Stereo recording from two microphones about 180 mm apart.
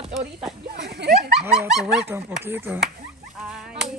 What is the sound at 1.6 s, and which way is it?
Speech, centre (ahead or behind).